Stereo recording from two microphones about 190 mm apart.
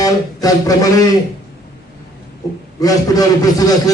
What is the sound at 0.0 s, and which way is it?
Speech, 20° left (ahead or behind).